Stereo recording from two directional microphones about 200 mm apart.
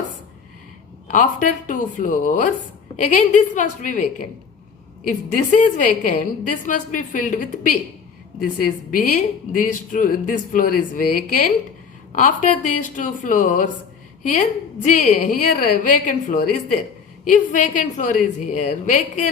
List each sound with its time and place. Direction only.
1.0 s a woman's voice: 40° left (ahead or behind)
5.0 s a woman's voice: 40° left (ahead or behind)
14.8 s a woman's voice: 40° left (ahead or behind)